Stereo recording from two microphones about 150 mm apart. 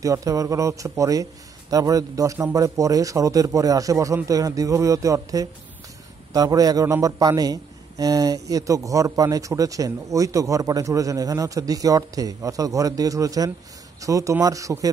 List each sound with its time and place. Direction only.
0.0 s a man's voice: 20° right (ahead or behind)